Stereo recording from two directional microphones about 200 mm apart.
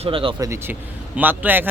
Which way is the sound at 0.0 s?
25° right (ahead or behind).